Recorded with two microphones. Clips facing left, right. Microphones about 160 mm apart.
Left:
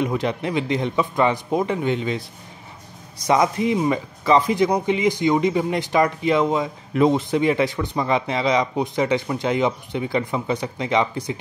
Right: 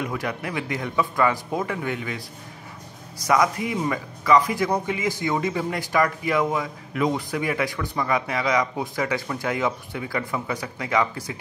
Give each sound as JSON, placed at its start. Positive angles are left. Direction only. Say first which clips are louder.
{"t": 0.0, "sound": "speech", "louder": "left 6 dB", "side_deg": 25}
{"t": 3.3, "sound": "speech", "louder": "left 3 dB", "side_deg": 25}